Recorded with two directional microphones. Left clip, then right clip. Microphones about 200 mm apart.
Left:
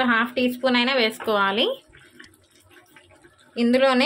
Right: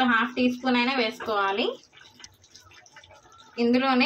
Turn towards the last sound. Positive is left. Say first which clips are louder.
# left 4 dB
turn(degrees=55)  # may be behind; listen again after turning